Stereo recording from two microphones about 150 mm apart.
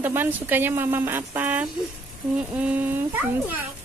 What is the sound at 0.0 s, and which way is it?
Speech, 15° right (ahead or behind).